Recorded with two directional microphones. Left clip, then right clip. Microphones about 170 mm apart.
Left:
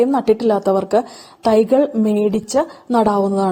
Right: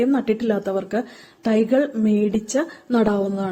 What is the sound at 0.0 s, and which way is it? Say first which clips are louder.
A woman's voice: left 6 dB; 35° left (ahead or behind).